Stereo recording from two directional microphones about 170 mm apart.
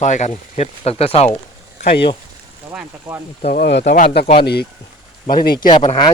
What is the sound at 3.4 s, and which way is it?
Speech, 40° left (ahead or behind).